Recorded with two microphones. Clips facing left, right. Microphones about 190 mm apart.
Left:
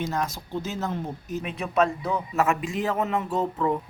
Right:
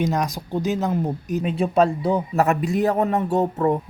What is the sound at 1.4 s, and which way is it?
A man's voice, 30° right (ahead or behind).